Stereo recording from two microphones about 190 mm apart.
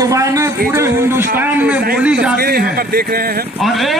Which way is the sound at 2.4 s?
55° right (ahead or behind).